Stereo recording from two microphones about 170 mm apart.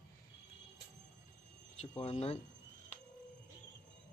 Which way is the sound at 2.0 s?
35° left (ahead or behind).